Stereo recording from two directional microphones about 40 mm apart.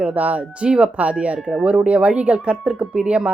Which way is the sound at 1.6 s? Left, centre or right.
Right.